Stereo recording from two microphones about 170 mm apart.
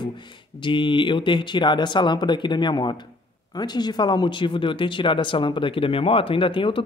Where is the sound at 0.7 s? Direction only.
30° left (ahead or behind).